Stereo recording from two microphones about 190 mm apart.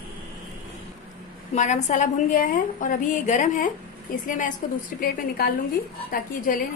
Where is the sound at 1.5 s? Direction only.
35° left (ahead or behind).